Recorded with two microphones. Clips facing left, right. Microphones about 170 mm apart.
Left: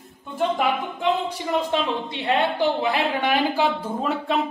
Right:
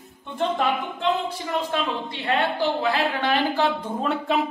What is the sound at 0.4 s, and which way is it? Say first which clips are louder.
A woman's voice: left 1 dB; 10° left (ahead or behind).